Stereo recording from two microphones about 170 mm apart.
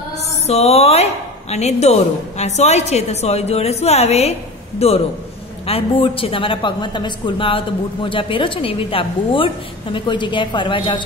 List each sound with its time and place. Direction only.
0.5 s a woman's voice: 35° left (ahead or behind)